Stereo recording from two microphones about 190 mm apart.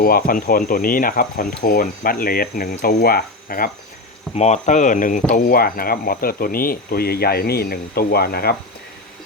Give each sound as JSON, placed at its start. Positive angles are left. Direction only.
{"t": 0.0, "sound": "speech", "side_deg": 50}
{"t": 4.4, "sound": "speech", "side_deg": 35}